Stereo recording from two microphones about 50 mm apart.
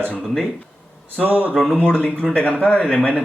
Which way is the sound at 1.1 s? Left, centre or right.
Right.